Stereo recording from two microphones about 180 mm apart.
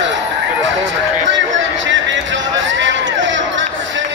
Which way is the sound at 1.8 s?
90° right.